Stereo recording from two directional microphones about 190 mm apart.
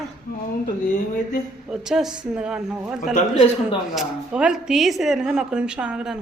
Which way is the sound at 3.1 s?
30° left (ahead or behind).